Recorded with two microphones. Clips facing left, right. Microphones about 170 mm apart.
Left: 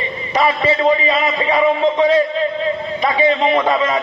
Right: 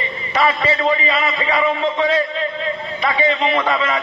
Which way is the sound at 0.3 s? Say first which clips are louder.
Left 2 dB; 20° left (ahead or behind).